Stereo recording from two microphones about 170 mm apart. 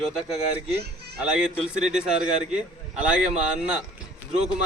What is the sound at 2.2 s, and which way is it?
Speech, 45° right (ahead or behind).